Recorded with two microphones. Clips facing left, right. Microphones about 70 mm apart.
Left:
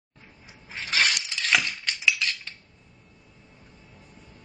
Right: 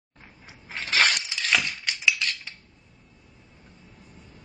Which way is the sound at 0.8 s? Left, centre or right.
Right.